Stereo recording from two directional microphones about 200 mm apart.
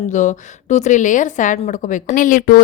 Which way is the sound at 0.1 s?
35° left (ahead or behind).